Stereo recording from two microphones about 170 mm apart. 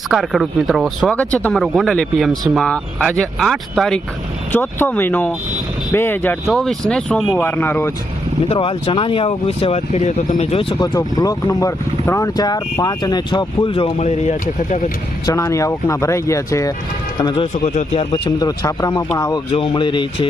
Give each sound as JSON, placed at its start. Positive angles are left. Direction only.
{"t": 0.1, "sound": "speech", "side_deg": 0}
{"t": 4.5, "sound": "speech", "side_deg": 10}
{"t": 6.4, "sound": "speech", "side_deg": 0}
{"t": 8.4, "sound": "speech", "side_deg": 30}
{"t": 10.8, "sound": "speech", "side_deg": 20}
{"t": 14.0, "sound": "speech", "side_deg": 40}
{"t": 15.3, "sound": "speech", "side_deg": 20}
{"t": 17.2, "sound": "speech", "side_deg": 30}
{"t": 17.6, "sound": "speech", "side_deg": 45}
{"t": 18.1, "sound": "speech", "side_deg": 20}
{"t": 19.5, "sound": "speech", "side_deg": 30}